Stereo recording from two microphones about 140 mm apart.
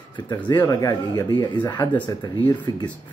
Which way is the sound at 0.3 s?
30° left (ahead or behind).